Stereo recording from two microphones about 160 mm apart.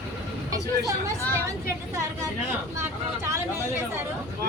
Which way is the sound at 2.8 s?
15° right (ahead or behind).